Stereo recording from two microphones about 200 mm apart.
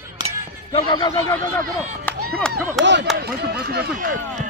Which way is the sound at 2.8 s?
65° right (ahead or behind).